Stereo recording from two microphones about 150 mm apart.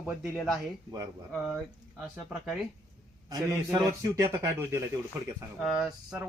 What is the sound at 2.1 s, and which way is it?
Speech, 10° right (ahead or behind).